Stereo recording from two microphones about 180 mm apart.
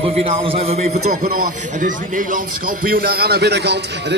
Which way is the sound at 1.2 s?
50° right (ahead or behind).